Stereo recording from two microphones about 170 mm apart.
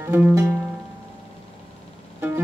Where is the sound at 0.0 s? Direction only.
15° right (ahead or behind).